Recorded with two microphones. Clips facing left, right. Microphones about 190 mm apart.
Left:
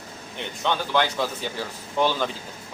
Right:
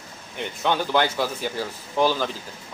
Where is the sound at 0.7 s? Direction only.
10° right (ahead or behind).